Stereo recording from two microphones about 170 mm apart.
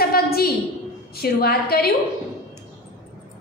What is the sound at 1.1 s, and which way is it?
Speech, 65° left (ahead or behind).